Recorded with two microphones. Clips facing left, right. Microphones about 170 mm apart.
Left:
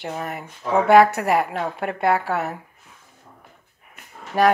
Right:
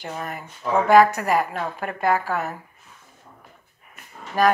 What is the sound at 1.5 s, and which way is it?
Speech, 15° left (ahead or behind).